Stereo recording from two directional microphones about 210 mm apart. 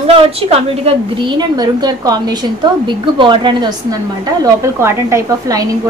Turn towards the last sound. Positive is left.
turn(degrees=-15)  # may be behind; listen again after turning